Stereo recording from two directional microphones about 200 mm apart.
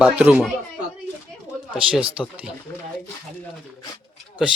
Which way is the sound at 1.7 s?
5° right (ahead or behind).